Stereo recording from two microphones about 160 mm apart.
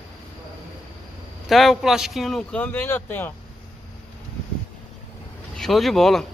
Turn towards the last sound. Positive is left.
turn(degrees=0)  # may be behind; listen again after turning